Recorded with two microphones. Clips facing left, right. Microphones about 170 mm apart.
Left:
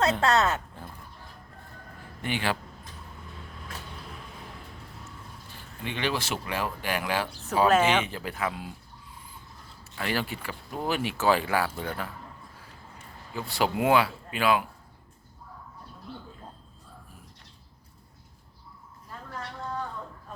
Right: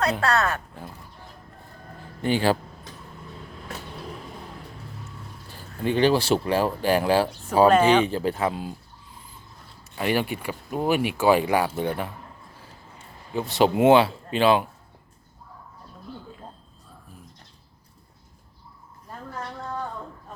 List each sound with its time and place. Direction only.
0.0 s speech: 20° left (ahead or behind)
2.2 s speech: 35° right (ahead or behind)
5.8 s speech: 35° right (ahead or behind)
7.7 s speech: 5° left (ahead or behind)
8.0 s speech: 30° right (ahead or behind)
9.9 s speech: 20° right (ahead or behind)
13.3 s speech: 20° right (ahead or behind)